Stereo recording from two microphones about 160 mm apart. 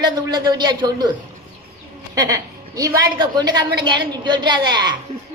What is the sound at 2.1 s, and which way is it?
A woman's voice, 20° right (ahead or behind).